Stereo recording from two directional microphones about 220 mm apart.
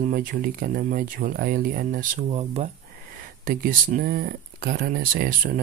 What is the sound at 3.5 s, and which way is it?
Speech, 40° right (ahead or behind).